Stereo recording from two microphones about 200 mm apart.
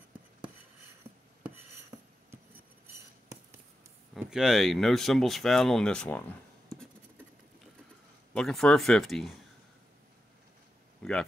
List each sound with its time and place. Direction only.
4.1 s speech: centre (ahead or behind)
8.3 s speech: 5° left (ahead or behind)
11.0 s a sound: 5° left (ahead or behind)